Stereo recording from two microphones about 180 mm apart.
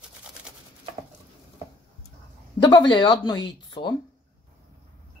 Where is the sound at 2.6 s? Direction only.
25° left (ahead or behind).